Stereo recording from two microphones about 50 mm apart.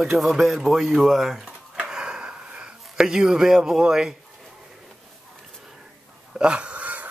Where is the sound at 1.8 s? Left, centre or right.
Centre.